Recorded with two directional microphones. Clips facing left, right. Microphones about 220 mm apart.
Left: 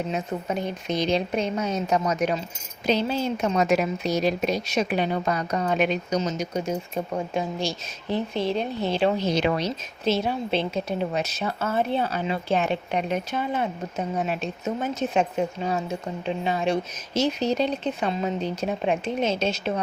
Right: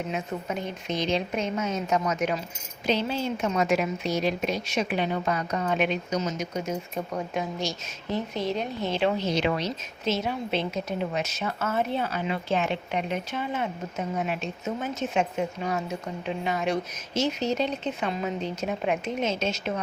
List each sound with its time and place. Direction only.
0.1 s a woman's voice: 35° left (ahead or behind)